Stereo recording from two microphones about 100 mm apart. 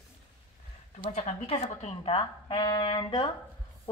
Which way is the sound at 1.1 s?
90° left.